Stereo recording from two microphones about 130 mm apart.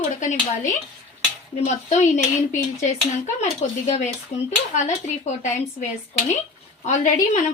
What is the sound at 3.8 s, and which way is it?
Speech, 60° left (ahead or behind).